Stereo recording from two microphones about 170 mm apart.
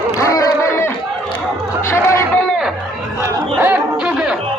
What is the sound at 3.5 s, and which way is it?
Chatter, 10° right (ahead or behind).